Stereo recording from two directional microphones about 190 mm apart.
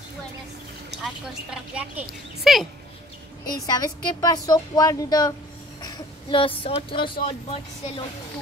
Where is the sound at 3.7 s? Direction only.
20° left (ahead or behind).